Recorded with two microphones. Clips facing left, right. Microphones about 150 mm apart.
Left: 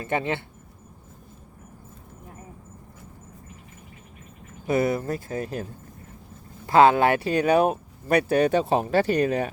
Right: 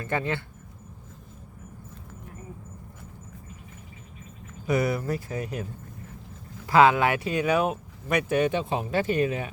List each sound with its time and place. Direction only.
0.0 s speech: 20° left (ahead or behind)
4.6 s speech: 25° left (ahead or behind)
6.7 s speech: 30° left (ahead or behind)